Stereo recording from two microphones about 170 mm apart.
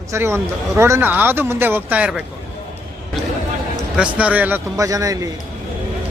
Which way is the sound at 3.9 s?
5° right (ahead or behind).